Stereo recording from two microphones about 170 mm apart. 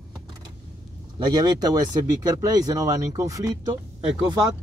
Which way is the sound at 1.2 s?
25° right (ahead or behind).